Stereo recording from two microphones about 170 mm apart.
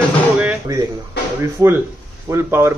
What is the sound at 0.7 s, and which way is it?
Speech, 20° right (ahead or behind).